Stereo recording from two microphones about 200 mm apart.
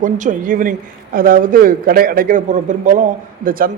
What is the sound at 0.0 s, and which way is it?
A woman's voice, 40° right (ahead or behind).